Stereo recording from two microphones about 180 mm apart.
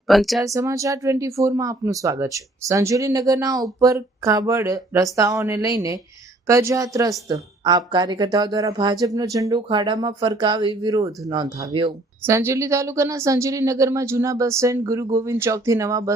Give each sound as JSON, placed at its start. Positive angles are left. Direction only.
{"t": 0.1, "sound": "speech", "side_deg": 0}
{"t": 0.4, "sound": "a woman's voice", "side_deg": -15}